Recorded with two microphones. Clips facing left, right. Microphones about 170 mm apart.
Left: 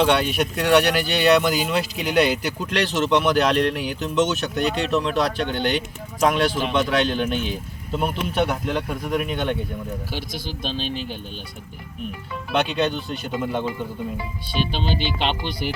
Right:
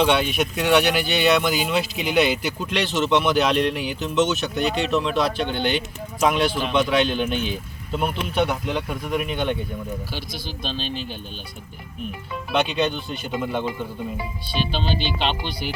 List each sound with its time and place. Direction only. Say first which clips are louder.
0.0 s speech: even; centre (ahead or behind)
10.2 s speech: left 2 dB; 50° left (ahead or behind)
10.6 s speech: left 1 dB; 15° left (ahead or behind)
10.8 s speech: left 1 dB; 55° left (ahead or behind)
12.5 s speech: even; centre (ahead or behind)
14.7 s speech: even; 15° left (ahead or behind)